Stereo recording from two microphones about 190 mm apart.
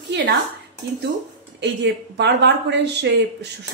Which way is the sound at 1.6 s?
65° right (ahead or behind).